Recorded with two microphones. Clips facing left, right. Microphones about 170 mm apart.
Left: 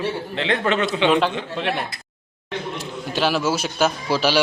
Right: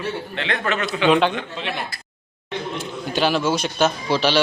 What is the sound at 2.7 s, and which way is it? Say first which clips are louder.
A man's voice: right 3 dB; centre (ahead or behind).